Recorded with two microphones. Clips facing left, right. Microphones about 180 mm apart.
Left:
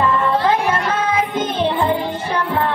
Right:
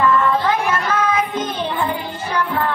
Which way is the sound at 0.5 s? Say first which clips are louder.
Left 2 dB; 30° left (ahead or behind).